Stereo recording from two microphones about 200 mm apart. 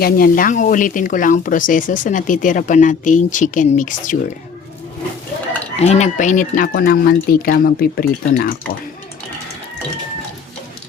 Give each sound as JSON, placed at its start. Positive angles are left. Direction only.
{"t": 0.0, "sound": "speech", "side_deg": 45}
{"t": 5.7, "sound": "speech", "side_deg": 35}